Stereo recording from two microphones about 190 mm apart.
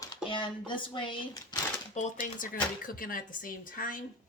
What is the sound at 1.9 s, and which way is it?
Speech, 45° left (ahead or behind).